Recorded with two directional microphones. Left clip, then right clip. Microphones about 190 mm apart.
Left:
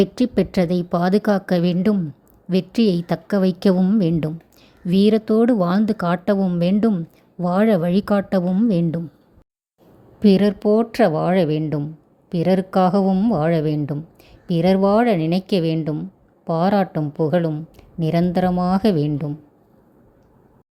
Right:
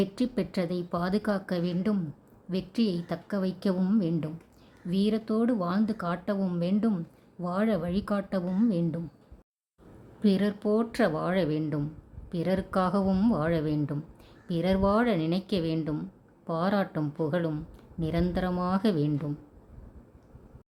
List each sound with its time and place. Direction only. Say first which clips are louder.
0.0 s a woman's voice: left 11 dB; 30° left (ahead or behind)
8.4 s a woman's voice: left 8 dB; 25° left (ahead or behind)
10.2 s a woman's voice: left 11 dB; 35° left (ahead or behind)